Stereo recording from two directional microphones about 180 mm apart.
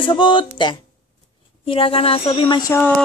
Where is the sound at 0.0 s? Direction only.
25° left (ahead or behind).